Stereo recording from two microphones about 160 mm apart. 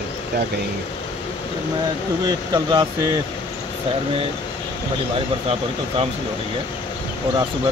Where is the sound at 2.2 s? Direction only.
25° right (ahead or behind).